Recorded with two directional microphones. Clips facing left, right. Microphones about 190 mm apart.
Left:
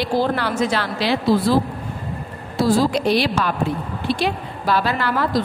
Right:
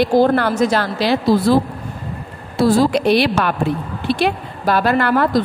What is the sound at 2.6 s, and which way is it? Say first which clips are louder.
A woman's voice: right 3 dB; 65° right (ahead or behind).